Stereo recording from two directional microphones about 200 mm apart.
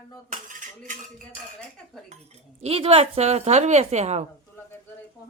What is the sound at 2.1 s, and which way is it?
A woman's voice, 35° right (ahead or behind).